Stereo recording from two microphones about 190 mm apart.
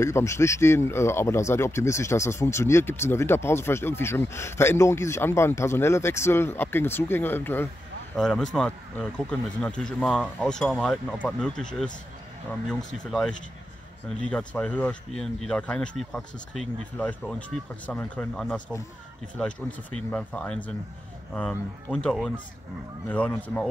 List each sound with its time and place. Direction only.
0.0 s speech: 15° left (ahead or behind)
12.6 s speech: centre (ahead or behind)